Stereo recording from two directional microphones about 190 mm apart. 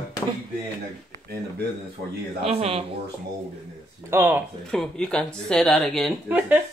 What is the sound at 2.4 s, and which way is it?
Speech, 30° right (ahead or behind).